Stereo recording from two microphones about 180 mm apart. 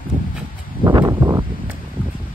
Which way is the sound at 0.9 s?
20° right (ahead or behind).